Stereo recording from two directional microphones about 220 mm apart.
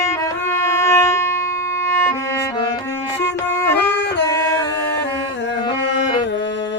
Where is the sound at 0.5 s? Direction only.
10° left (ahead or behind).